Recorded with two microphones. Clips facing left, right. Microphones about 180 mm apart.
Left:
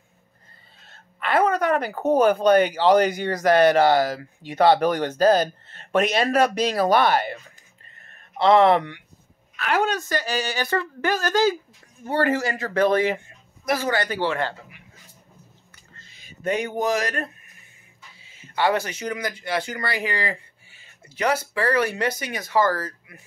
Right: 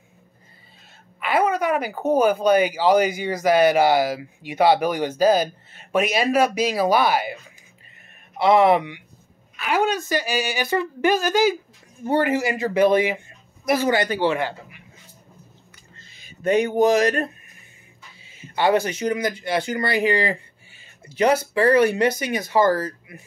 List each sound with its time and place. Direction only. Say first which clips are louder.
0.8 s a woman's voice: even; 5° right (ahead or behind)
16.4 s speech: right 6 dB; 25° right (ahead or behind)
18.3 s speech: right 3 dB; 15° right (ahead or behind)